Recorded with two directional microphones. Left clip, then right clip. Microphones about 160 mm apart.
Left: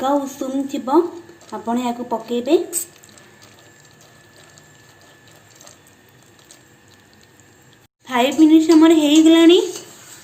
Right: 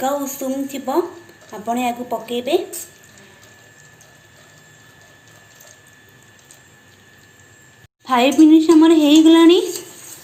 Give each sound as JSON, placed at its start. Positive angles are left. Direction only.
{"t": 0.0, "sound": "speech", "side_deg": 45}
{"t": 8.0, "sound": "a child's voice", "side_deg": -35}